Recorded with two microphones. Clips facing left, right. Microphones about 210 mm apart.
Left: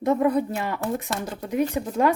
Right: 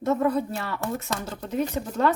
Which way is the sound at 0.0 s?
15° left (ahead or behind).